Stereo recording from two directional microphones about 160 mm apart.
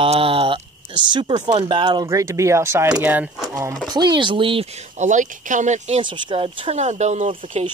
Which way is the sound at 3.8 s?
25° right (ahead or behind).